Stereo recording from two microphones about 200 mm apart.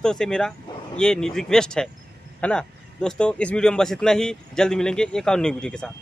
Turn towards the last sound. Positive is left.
turn(degrees=5)  # may be behind; listen again after turning